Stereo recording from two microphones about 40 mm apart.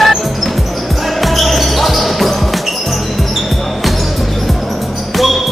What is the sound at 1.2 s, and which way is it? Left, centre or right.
Basketball bounce, centre.